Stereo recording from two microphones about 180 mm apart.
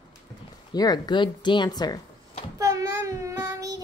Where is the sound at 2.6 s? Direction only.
15° right (ahead or behind).